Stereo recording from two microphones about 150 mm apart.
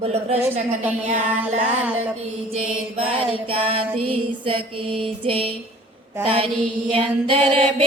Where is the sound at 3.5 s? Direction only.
40° right (ahead or behind).